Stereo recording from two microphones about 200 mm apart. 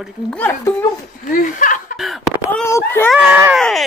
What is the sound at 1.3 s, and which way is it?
Speech, 45° left (ahead or behind).